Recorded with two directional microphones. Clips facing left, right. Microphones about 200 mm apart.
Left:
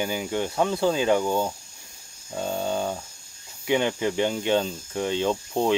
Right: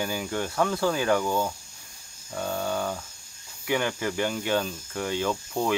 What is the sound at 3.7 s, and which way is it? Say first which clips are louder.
Speech: left 4 dB; 20° left (ahead or behind).